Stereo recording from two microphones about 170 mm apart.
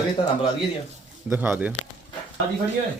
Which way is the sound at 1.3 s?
10° right (ahead or behind).